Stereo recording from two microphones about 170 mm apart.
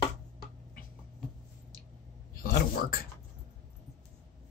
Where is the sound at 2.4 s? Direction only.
60° left (ahead or behind).